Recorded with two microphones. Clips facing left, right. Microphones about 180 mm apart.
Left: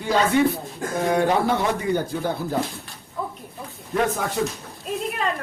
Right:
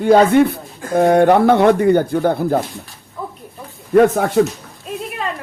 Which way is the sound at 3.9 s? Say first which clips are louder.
Right 11 dB; 55° right (ahead or behind).